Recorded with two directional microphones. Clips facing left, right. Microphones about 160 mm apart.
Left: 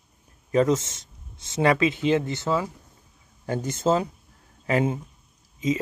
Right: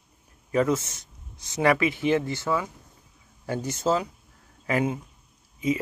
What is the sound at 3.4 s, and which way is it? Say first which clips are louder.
Speech: left 2 dB; 45° left (ahead or behind).